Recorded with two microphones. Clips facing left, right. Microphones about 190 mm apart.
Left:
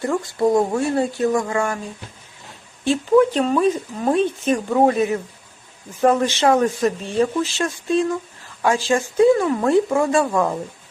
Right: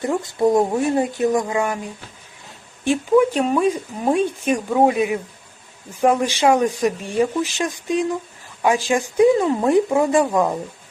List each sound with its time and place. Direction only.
0.0 s speech: 20° right (ahead or behind)
2.8 s speech: 15° right (ahead or behind)